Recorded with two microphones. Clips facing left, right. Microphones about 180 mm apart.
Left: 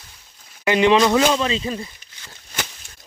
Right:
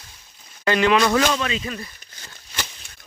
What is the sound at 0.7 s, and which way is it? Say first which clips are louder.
Speech: left 3 dB; 20° left (ahead or behind).